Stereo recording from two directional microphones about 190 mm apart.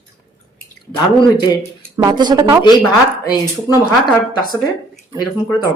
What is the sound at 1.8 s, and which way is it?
Speech, 20° right (ahead or behind).